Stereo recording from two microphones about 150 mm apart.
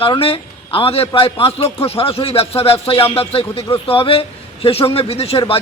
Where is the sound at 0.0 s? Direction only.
35° left (ahead or behind).